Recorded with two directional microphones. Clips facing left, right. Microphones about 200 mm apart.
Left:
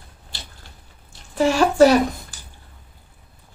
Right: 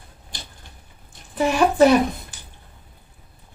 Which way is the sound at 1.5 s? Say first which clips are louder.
Left 1 dB; 20° right (ahead or behind).